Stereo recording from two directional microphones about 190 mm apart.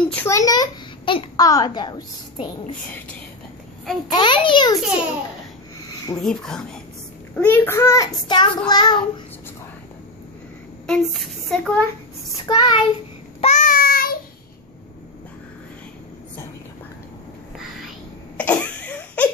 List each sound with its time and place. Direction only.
0.1 s a child's voice: 15° left (ahead or behind)
4.1 s a child's voice: 25° left (ahead or behind)
6.2 s speech: 5° left (ahead or behind)
7.3 s child singing: 10° left (ahead or behind)
8.6 s a child's voice: 20° left (ahead or behind)
10.9 s speech: centre (ahead or behind)
12.4 s a child's voice: 25° left (ahead or behind)
13.4 s child singing: 40° left (ahead or behind)
18.4 s a sound: 5° left (ahead or behind)